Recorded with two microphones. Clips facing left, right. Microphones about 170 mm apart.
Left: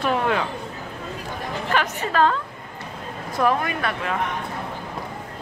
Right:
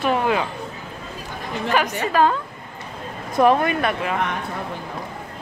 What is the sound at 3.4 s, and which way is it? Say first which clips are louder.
Speech: right 5 dB; 20° right (ahead or behind).